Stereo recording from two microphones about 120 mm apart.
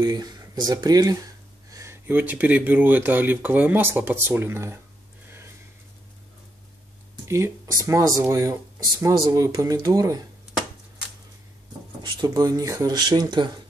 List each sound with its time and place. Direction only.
0.0 s speech: 30° right (ahead or behind)
7.2 s speech: 20° right (ahead or behind)
12.0 s speech: 35° right (ahead or behind)